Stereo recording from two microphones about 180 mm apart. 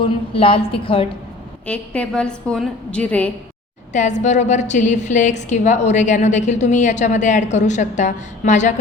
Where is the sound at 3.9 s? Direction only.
40° left (ahead or behind).